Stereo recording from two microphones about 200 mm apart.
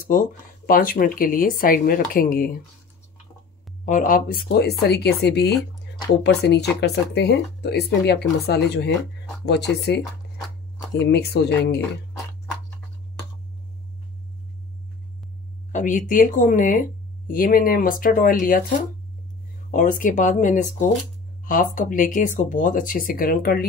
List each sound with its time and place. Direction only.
0.0 s speech: 45° left (ahead or behind)
3.8 s speech: 40° left (ahead or behind)
15.7 s speech: 40° left (ahead or behind)